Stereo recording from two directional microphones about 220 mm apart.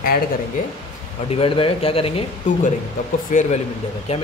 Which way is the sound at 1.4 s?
25° left (ahead or behind).